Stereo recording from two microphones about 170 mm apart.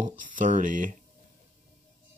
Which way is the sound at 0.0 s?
50° right (ahead or behind).